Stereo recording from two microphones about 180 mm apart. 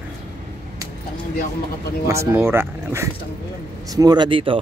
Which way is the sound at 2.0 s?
15° right (ahead or behind).